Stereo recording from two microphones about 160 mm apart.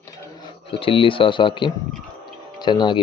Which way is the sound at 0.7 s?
35° left (ahead or behind).